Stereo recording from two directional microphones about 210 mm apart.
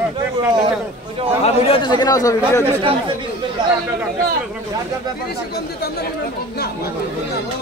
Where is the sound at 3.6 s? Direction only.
20° right (ahead or behind).